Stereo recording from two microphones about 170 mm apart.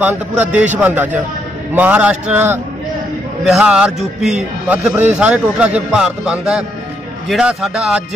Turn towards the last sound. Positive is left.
turn(degrees=0)  # may be behind; listen again after turning